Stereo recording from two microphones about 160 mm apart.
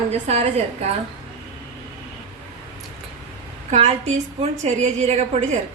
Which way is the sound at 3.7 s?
45° right (ahead or behind).